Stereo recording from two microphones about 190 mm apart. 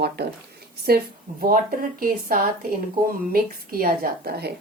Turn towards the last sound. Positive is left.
turn(degrees=-55)  # may be behind; listen again after turning